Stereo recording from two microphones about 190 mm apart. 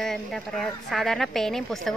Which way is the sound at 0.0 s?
Centre (ahead or behind).